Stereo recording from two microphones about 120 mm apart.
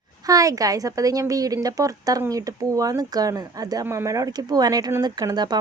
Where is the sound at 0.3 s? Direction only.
30° right (ahead or behind).